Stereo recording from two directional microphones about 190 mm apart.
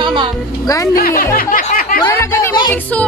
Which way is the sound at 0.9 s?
50° left (ahead or behind).